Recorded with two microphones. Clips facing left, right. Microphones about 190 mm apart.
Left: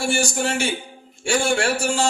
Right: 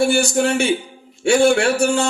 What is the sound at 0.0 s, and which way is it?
Speech, 60° right (ahead or behind).